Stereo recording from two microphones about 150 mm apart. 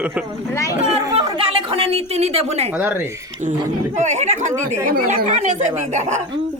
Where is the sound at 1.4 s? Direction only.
40° right (ahead or behind).